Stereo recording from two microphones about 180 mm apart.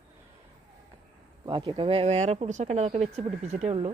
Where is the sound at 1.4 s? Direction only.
25° right (ahead or behind).